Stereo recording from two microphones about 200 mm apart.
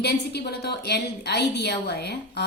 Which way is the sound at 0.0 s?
55° left (ahead or behind).